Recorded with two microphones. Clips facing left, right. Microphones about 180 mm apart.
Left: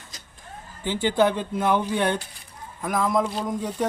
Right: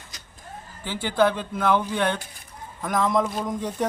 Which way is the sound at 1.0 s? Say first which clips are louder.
Even; 15° left (ahead or behind).